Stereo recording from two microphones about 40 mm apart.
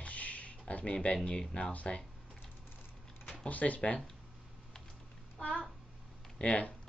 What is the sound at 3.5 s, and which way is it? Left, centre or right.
Speech, left.